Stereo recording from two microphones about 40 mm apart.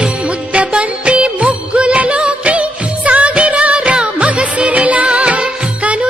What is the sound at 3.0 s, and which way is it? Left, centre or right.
Music, right.